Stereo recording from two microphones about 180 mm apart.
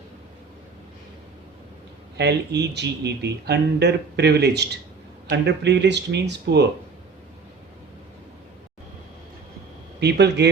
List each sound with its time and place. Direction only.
2.1 s speech: 70° right (ahead or behind)
10.0 s speech: 70° right (ahead or behind)